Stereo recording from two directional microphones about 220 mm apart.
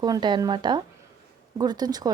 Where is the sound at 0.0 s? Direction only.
20° right (ahead or behind).